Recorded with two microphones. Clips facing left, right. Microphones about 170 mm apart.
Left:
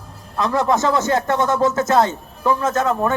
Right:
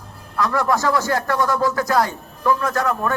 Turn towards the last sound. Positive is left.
turn(degrees=20)  # may be behind; listen again after turning